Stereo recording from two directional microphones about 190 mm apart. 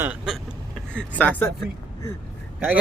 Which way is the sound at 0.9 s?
5° left (ahead or behind).